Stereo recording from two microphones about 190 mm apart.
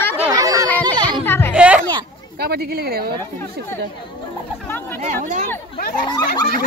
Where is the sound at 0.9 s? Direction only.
25° right (ahead or behind).